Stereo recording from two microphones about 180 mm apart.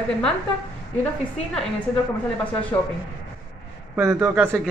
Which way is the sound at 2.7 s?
15° left (ahead or behind).